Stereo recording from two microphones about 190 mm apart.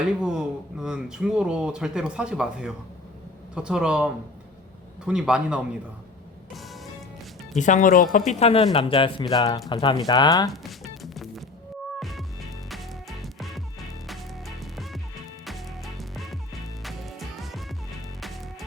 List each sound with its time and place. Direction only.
0.2 s speech: 5° right (ahead or behind)
6.5 s music: centre (ahead or behind)
7.6 s speech: 40° left (ahead or behind); by 10.5 s 20° left (ahead or behind)
10.5 s speech: centre (ahead or behind)
11.0 s music: centre (ahead or behind)